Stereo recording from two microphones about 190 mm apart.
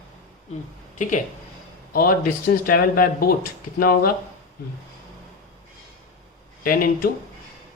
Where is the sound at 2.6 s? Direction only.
50° left (ahead or behind).